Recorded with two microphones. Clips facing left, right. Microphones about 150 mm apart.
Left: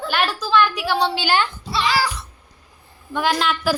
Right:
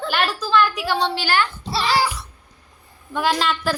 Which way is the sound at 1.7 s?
35° right (ahead or behind).